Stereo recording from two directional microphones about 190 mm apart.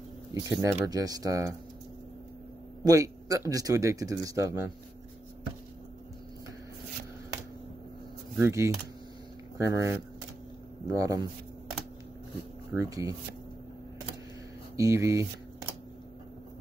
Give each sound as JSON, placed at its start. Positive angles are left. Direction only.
{"t": 0.3, "sound": "speech", "side_deg": -20}
{"t": 2.8, "sound": "speech", "side_deg": -20}
{"t": 8.4, "sound": "speech", "side_deg": -15}
{"t": 12.7, "sound": "speech", "side_deg": -15}
{"t": 14.8, "sound": "speech", "side_deg": -15}